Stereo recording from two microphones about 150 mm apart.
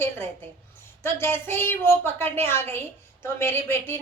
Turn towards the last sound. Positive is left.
turn(degrees=15)  # may be behind; listen again after turning